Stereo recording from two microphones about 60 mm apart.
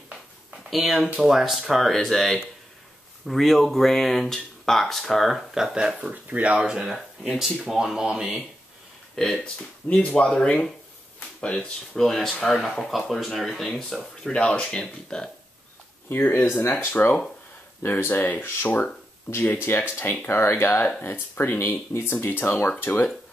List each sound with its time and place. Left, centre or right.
0.7 s speech: centre
5.9 s speech: right
6.6 s speech: centre
9.1 s speech: centre
9.4 s speech: centre
11.9 s speech: centre
14.3 s speech: centre
16.1 s speech: left
19.6 s speech: left